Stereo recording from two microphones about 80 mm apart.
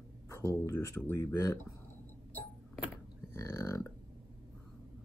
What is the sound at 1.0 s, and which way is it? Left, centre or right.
Speech, left.